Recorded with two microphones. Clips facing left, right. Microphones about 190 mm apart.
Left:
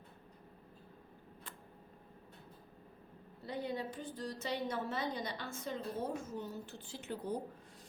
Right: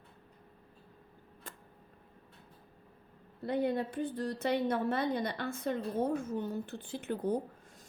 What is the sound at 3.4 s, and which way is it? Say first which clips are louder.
A woman's voice: right 8 dB; 60° right (ahead or behind).